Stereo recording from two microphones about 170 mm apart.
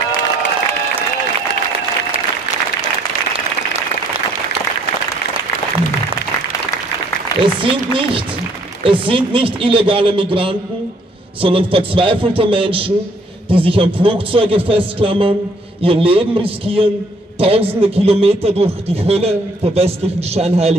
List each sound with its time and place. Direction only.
7.3 s applause: 20° left (ahead or behind)
7.6 s a man's voice: 30° right (ahead or behind)